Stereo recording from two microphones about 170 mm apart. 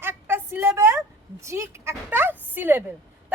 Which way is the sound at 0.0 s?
15° right (ahead or behind).